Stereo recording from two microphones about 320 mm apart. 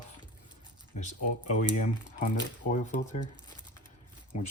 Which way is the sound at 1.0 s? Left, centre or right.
Left.